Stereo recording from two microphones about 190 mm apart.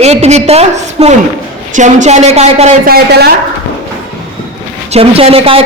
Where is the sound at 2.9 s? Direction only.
55° right (ahead or behind).